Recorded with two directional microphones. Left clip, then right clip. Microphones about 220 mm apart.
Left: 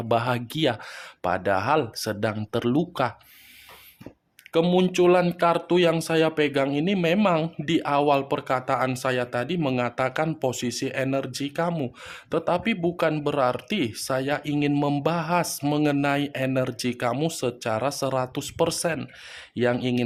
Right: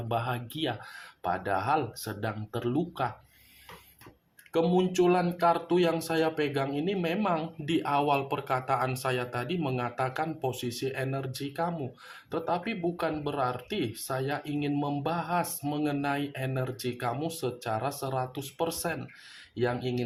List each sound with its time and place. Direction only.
0.1 s speech: 50° left (ahead or behind)
4.5 s speech: 45° left (ahead or behind)